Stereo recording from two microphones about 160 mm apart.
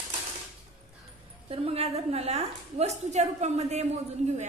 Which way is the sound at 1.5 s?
40° right (ahead or behind).